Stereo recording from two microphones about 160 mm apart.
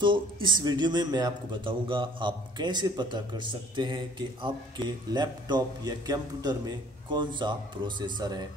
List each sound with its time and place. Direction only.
0.0 s speech: 30° right (ahead or behind)